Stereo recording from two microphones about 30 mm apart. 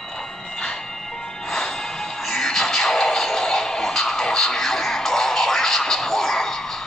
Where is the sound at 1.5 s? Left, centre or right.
Centre.